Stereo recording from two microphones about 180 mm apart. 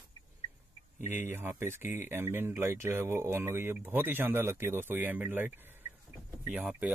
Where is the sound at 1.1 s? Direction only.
10° right (ahead or behind).